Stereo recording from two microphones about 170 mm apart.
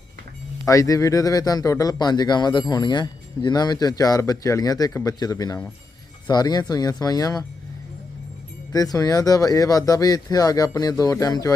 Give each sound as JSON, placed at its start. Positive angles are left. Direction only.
{"t": 0.6, "sound": "a man's voice", "side_deg": 20}
{"t": 8.7, "sound": "a man's voice", "side_deg": 20}